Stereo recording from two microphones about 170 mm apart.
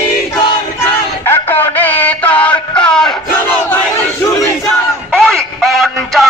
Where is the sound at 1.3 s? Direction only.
15° left (ahead or behind).